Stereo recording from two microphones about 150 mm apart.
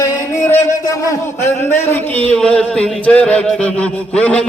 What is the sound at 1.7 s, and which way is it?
A man's voice, 10° left (ahead or behind).